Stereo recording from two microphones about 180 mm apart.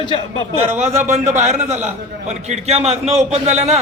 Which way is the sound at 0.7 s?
40° right (ahead or behind).